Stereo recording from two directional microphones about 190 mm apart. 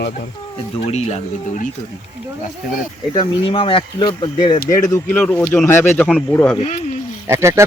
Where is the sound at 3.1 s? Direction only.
25° left (ahead or behind).